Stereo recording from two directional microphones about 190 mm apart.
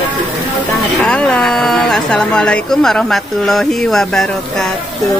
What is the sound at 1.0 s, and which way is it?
Speech, 5° left (ahead or behind).